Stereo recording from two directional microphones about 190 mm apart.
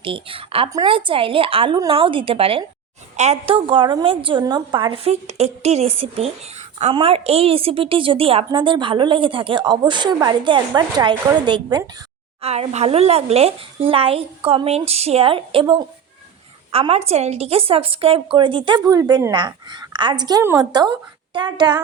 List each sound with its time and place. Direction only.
0.0 s a woman's voice: 30° right (ahead or behind)